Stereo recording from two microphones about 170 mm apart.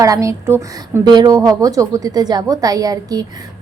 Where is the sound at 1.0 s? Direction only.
25° right (ahead or behind).